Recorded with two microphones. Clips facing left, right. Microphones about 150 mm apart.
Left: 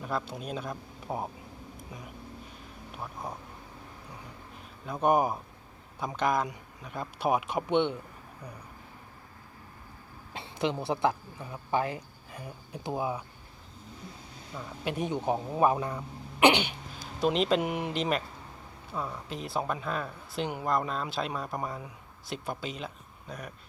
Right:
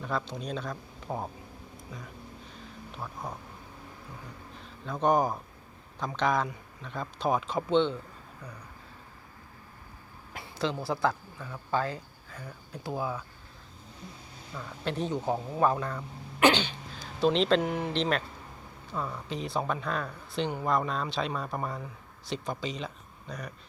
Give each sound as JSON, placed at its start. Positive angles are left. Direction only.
{"t": 0.0, "sound": "speech", "side_deg": 5}
{"t": 2.9, "sound": "speech", "side_deg": 10}
{"t": 4.9, "sound": "speech", "side_deg": 10}
{"t": 10.3, "sound": "speech", "side_deg": 20}
{"t": 14.5, "sound": "speech", "side_deg": 15}